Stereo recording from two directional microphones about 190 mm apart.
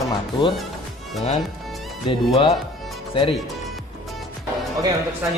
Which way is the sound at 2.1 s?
30° left (ahead or behind).